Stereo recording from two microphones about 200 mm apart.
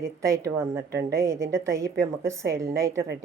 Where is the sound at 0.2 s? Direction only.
15° right (ahead or behind).